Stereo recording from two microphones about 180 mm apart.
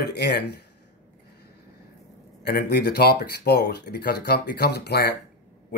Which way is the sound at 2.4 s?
65° left (ahead or behind).